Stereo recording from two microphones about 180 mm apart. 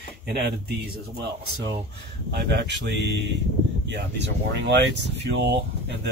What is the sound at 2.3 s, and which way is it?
Speech, 65° right (ahead or behind).